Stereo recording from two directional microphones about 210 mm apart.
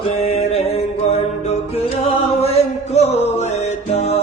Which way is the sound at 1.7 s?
30° left (ahead or behind).